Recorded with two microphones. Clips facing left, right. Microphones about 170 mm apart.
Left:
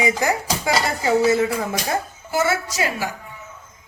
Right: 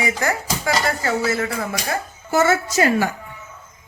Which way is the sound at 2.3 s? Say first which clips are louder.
Right 4 dB; 50° right (ahead or behind).